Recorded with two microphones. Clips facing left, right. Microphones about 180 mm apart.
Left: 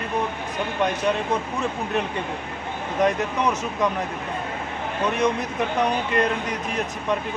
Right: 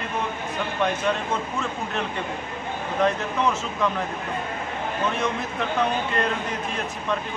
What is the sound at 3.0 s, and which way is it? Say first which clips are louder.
Speech: left 1 dB; 15° left (ahead or behind).